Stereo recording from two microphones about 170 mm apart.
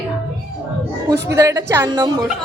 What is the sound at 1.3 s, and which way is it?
Speech, 15° right (ahead or behind).